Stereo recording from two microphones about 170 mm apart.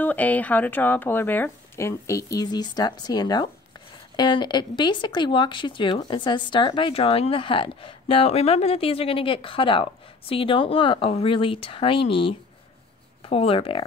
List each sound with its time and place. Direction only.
0.0 s a woman's voice: 10° left (ahead or behind); by 13.8 s 35° left (ahead or behind)